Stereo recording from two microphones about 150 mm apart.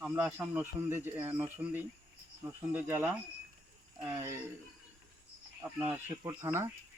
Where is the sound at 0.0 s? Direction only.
5° right (ahead or behind).